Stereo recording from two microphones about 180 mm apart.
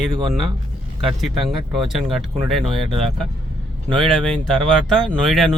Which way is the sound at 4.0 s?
5° left (ahead or behind).